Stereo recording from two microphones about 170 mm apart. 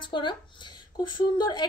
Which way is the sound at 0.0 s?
30° left (ahead or behind).